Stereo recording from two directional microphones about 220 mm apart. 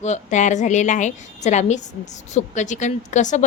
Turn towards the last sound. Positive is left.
turn(degrees=35)  # may be behind; listen again after turning